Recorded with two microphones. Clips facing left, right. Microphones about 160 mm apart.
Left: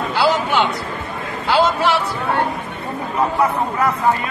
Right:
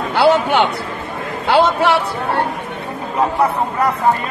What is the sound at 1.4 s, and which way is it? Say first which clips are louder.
Speech: right 3 dB; 60° right (ahead or behind).